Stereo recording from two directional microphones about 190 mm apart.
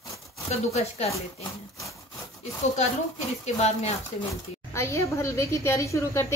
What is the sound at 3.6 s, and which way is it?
Speech, 35° left (ahead or behind).